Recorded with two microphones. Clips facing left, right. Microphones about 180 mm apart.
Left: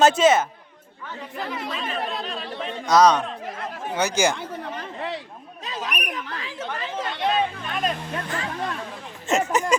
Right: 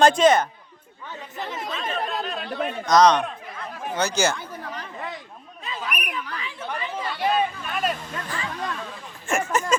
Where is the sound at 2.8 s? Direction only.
5° left (ahead or behind).